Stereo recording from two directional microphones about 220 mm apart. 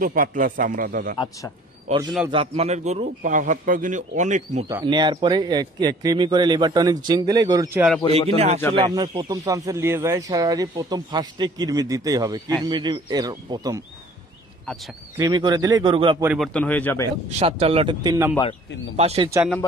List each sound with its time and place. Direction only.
0.0 s a man's voice: 40° right (ahead or behind)
1.9 s a man's voice: 20° right (ahead or behind); by 4.6 s 35° right (ahead or behind)
4.6 s speech: 15° right (ahead or behind)
8.1 s speech: 30° right (ahead or behind)
15.1 s speech: 20° right (ahead or behind)
16.3 s speech: 5° left (ahead or behind)
17.3 s speech: 30° right (ahead or behind)